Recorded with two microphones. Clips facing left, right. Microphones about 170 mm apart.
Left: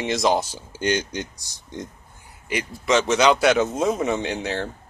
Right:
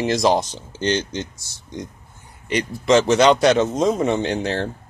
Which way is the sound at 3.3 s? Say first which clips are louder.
Right 3 dB; 30° right (ahead or behind).